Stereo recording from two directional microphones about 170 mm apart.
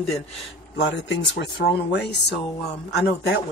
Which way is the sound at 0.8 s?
90° left.